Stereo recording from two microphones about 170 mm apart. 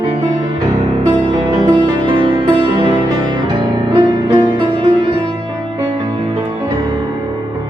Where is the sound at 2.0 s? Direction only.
30° right (ahead or behind).